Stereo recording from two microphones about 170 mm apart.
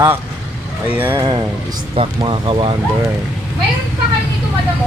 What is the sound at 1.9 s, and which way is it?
Speech, 30° right (ahead or behind).